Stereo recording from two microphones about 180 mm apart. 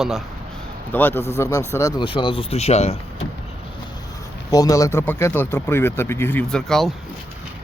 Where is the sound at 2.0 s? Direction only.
30° left (ahead or behind).